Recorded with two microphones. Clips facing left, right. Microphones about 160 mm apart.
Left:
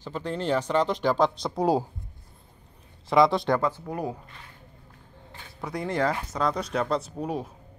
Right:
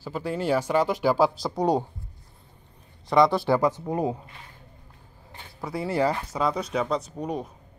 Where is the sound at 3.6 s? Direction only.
15° right (ahead or behind).